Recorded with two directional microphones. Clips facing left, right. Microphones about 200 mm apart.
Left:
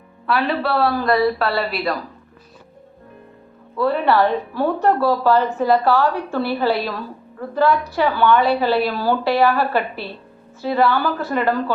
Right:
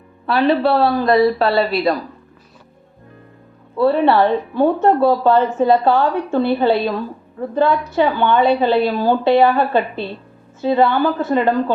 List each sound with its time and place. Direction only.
0.3 s a woman's voice: 25° right (ahead or behind)
3.8 s a woman's voice: 30° right (ahead or behind)